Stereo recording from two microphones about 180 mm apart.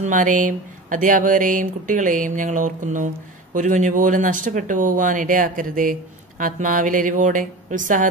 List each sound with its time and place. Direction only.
0.0 s speech: 45° right (ahead or behind)